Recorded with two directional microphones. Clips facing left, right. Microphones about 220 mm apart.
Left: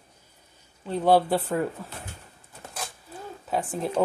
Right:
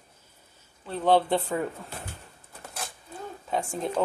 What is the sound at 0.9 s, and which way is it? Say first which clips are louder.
Speech: left 2 dB; 10° left (ahead or behind).